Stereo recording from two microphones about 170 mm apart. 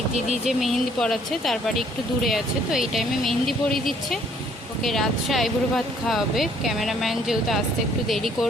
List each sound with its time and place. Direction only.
0.4 s speech: centre (ahead or behind)